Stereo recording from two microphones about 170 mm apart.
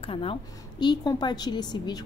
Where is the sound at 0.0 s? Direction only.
30° left (ahead or behind).